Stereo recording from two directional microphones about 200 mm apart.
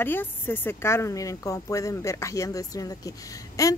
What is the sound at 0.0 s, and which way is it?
Speech, 10° left (ahead or behind).